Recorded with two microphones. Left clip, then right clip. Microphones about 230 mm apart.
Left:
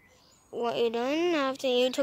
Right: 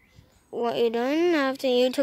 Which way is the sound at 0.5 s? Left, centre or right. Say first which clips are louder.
Right 4 dB; right.